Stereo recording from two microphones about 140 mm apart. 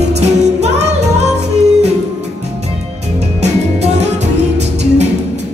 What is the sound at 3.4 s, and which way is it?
Music, 55° right (ahead or behind).